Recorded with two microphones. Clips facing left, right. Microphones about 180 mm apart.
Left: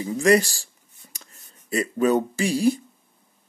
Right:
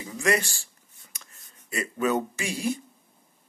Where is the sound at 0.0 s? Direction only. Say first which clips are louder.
Left 8 dB; 35° left (ahead or behind).